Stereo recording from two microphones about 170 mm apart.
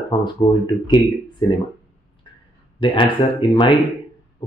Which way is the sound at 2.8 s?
30° left (ahead or behind).